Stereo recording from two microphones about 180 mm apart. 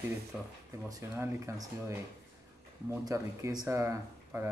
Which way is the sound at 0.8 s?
15° right (ahead or behind).